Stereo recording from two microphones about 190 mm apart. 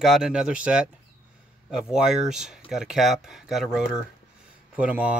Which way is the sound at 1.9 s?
Centre (ahead or behind).